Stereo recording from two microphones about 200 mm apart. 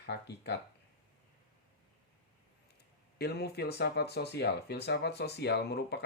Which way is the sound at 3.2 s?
55° left (ahead or behind).